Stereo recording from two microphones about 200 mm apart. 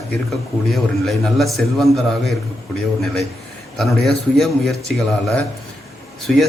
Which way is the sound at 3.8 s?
Centre (ahead or behind).